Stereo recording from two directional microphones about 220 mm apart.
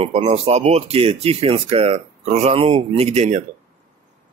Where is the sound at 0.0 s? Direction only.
30° right (ahead or behind).